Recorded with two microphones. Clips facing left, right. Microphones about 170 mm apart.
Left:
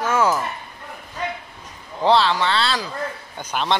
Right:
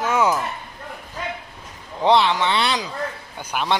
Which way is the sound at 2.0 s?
20° right (ahead or behind).